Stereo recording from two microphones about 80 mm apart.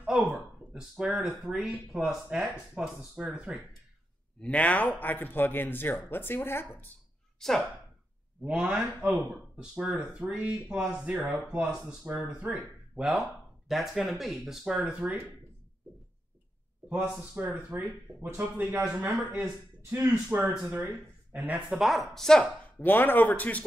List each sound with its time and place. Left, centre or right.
0.0 s a sound: centre
1.5 s speech: centre
4.4 s a man's voice: centre
7.3 s speech: centre
8.4 s speech: centre
17.4 s speech: right
21.6 s speech: centre
22.8 s a man's voice: left